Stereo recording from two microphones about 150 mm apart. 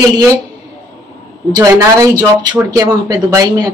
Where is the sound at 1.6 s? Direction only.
20° right (ahead or behind).